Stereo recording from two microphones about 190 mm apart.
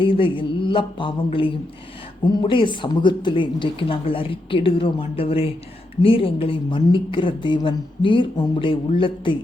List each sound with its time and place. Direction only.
0.0 s speech: 25° left (ahead or behind)